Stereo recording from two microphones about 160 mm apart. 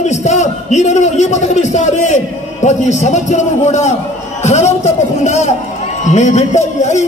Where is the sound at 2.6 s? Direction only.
45° left (ahead or behind).